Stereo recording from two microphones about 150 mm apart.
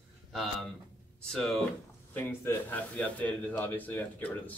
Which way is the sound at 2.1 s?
15° left (ahead or behind).